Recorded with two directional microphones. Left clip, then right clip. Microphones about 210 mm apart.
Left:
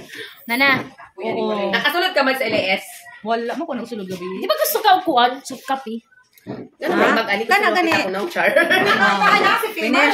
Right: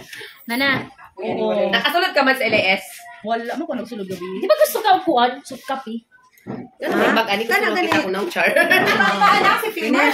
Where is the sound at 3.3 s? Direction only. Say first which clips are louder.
Left 1 dB; 40° left (ahead or behind).